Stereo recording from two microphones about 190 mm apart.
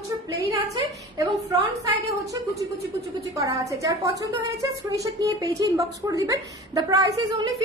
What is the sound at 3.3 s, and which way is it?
A woman's voice, 15° right (ahead or behind).